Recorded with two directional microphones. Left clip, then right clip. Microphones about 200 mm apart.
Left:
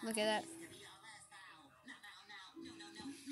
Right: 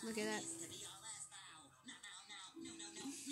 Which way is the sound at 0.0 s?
50° left (ahead or behind).